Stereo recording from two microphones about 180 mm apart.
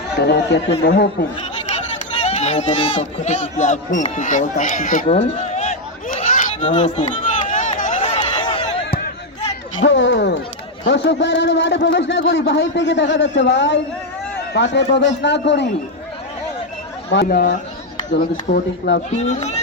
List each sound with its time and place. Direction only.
0.2 s a man's voice: 70° left (ahead or behind)
2.2 s speech: 40° left (ahead or behind)
6.7 s speech: 35° left (ahead or behind)
7.4 s a sound: 45° left (ahead or behind); by 8.7 s 25° left (ahead or behind)
9.8 s a sound: 90° left
10.8 s a man's voice: 80° left
17.2 s speech: 50° left (ahead or behind)